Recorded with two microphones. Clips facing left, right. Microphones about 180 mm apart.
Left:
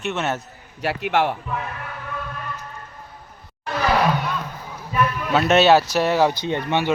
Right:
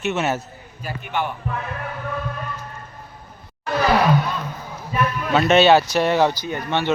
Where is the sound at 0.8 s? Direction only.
80° left.